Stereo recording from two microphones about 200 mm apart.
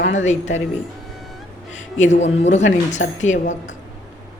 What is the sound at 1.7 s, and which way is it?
A man's voice, 35° left (ahead or behind).